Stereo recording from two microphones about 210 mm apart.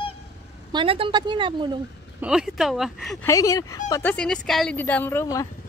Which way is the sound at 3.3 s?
15° left (ahead or behind).